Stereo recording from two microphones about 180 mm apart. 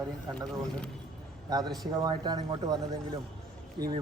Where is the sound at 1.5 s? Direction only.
20° right (ahead or behind).